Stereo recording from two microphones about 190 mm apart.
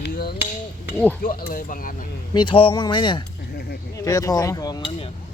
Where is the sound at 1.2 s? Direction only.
45° left (ahead or behind).